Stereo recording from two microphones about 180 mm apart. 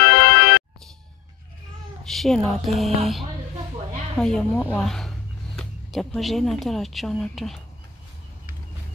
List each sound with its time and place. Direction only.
0.0 s music: 60° left (ahead or behind)
2.0 s a sound: centre (ahead or behind)
3.0 s speech: centre (ahead or behind)